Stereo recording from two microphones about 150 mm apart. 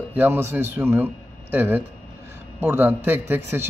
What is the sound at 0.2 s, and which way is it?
Speech, 15° right (ahead or behind).